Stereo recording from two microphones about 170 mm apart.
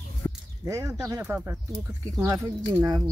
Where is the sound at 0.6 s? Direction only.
20° right (ahead or behind).